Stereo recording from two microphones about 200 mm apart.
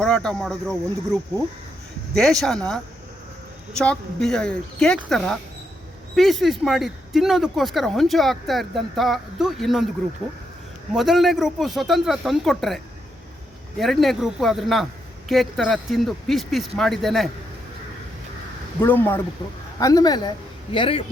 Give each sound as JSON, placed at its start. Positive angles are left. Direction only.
{"t": 0.0, "sound": "speech", "side_deg": 5}
{"t": 10.9, "sound": "speech", "side_deg": 0}
{"t": 18.8, "sound": "a woman's voice", "side_deg": 10}